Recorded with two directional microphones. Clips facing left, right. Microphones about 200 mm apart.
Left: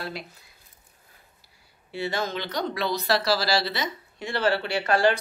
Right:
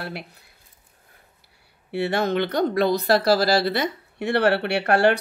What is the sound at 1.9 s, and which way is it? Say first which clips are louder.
Speech: right 6 dB; 65° right (ahead or behind).